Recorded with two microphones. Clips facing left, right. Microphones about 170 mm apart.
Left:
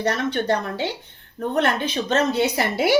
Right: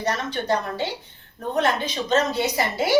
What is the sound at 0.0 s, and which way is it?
A woman's voice, 60° left (ahead or behind).